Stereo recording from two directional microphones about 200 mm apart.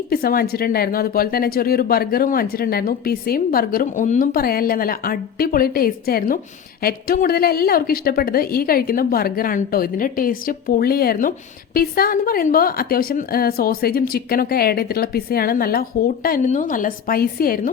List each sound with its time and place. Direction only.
0.1 s a woman's voice: 50° left (ahead or behind)